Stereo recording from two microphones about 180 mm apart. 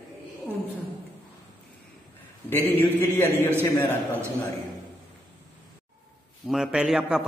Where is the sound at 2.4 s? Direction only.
10° left (ahead or behind).